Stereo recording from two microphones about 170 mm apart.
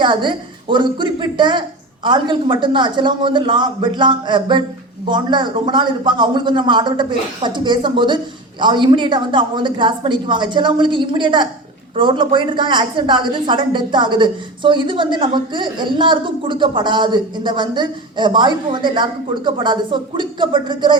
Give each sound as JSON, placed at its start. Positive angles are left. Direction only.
{"t": 0.0, "sound": "a woman's voice", "side_deg": -30}